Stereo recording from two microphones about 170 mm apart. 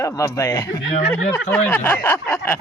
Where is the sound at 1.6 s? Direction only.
10° left (ahead or behind).